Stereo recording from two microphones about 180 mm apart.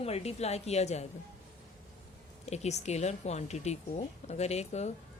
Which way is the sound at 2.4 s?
40° left (ahead or behind).